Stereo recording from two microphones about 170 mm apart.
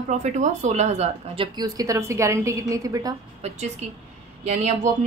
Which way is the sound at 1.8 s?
15° right (ahead or behind).